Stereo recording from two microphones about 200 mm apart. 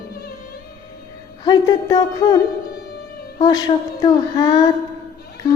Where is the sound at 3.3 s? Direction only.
20° left (ahead or behind).